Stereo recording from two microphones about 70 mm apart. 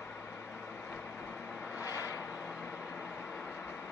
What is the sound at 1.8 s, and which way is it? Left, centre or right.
Vehicle, left.